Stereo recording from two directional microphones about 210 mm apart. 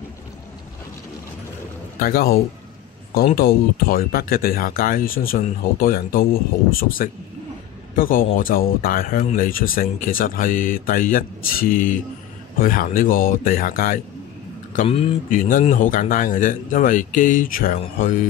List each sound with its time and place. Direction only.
2.0 s a man's voice: 45° left (ahead or behind)
14.7 s speech: 30° left (ahead or behind)
15.2 s speech: 40° left (ahead or behind)